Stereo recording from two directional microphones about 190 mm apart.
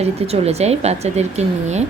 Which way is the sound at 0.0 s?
35° right (ahead or behind).